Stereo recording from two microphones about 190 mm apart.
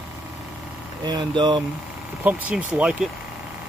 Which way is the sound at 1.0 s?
20° right (ahead or behind).